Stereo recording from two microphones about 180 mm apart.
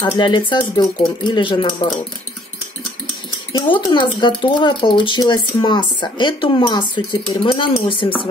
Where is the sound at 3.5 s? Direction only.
25° left (ahead or behind).